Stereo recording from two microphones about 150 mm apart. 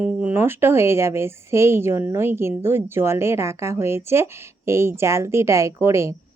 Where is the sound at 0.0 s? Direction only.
10° right (ahead or behind).